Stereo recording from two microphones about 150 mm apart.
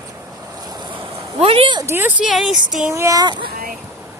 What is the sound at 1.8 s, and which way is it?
Speech, 15° right (ahead or behind).